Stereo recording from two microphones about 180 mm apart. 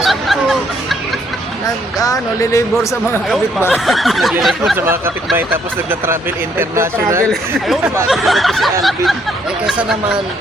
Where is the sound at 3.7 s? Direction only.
Centre (ahead or behind).